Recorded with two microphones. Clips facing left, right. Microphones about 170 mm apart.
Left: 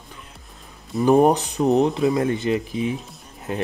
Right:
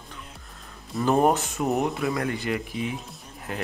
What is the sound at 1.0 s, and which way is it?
Speech, 15° left (ahead or behind).